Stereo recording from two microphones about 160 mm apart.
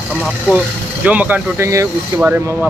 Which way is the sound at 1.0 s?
10° right (ahead or behind).